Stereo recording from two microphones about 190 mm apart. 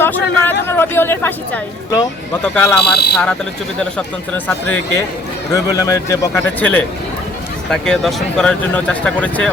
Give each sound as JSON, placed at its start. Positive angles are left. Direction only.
{"t": 0.0, "sound": "a woman's voice", "side_deg": 10}
{"t": 5.5, "sound": "a woman's voice", "side_deg": 15}